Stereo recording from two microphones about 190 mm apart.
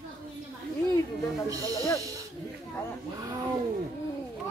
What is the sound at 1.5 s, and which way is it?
Speech, 20° right (ahead or behind).